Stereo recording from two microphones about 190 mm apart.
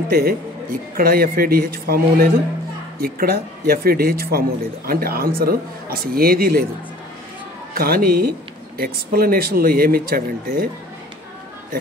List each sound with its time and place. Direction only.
0.1 s speech: 55° right (ahead or behind)
7.7 s speech: 50° right (ahead or behind)